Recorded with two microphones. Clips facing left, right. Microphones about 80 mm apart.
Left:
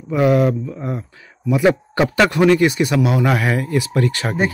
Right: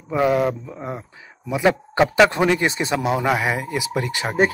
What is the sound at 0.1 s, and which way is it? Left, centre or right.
Speech, right.